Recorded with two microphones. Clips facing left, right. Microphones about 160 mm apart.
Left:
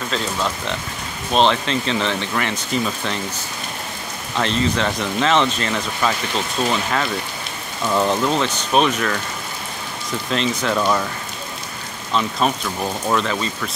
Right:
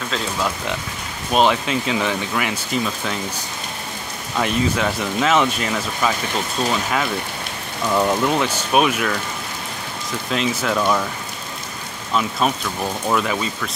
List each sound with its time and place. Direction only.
0.1 s speech: 5° right (ahead or behind)
4.4 s speech: 10° right (ahead or behind)
10.3 s speech: 5° right (ahead or behind)
12.1 s speech: 5° right (ahead or behind)